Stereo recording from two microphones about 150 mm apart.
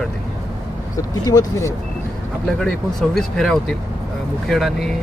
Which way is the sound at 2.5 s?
5° left (ahead or behind).